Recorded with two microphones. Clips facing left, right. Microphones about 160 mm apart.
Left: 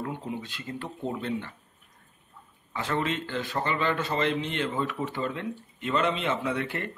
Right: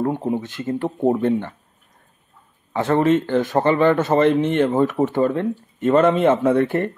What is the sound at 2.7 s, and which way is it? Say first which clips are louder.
A man's voice: right 12 dB; 55° right (ahead or behind).